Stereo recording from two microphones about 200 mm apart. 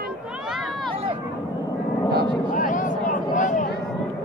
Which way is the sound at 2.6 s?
40° left (ahead or behind).